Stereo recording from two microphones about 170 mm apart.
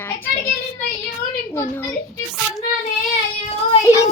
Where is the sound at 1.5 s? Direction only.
15° left (ahead or behind).